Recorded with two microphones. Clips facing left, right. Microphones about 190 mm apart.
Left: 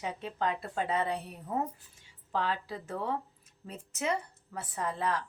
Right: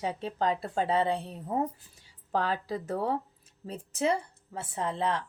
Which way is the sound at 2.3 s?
40° right (ahead or behind).